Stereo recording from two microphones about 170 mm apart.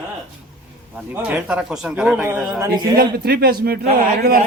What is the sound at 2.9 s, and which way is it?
Speech, 65° right (ahead or behind).